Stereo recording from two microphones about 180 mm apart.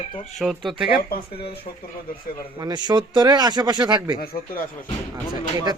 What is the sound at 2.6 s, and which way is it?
Speech, 25° right (ahead or behind).